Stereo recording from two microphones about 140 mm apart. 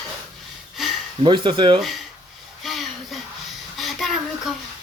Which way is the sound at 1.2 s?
35° right (ahead or behind).